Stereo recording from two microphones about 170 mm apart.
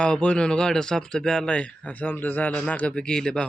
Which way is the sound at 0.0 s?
5° left (ahead or behind).